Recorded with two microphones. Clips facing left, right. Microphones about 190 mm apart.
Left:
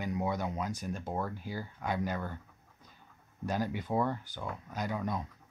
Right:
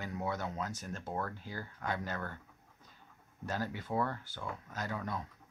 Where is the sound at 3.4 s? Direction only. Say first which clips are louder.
Left 4 dB; 15° left (ahead or behind).